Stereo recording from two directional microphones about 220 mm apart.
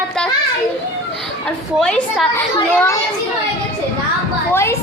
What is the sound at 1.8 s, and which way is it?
Speech, 5° left (ahead or behind).